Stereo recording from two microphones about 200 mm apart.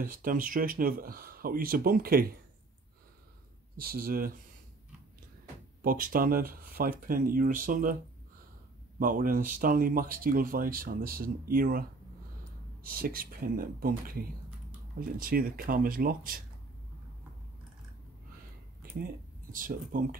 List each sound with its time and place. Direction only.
0.0 s speech: 45° right (ahead or behind)
3.7 s speech: 45° right (ahead or behind)
5.8 s speech: 45° right (ahead or behind)
9.0 s speech: 45° right (ahead or behind)
12.8 s speech: 45° right (ahead or behind)
18.8 s speech: 45° right (ahead or behind)